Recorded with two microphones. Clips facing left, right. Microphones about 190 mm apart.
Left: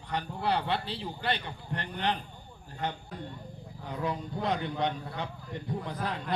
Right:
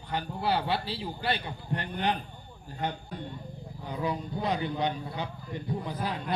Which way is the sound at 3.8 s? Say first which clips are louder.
Right 1 dB; centre (ahead or behind).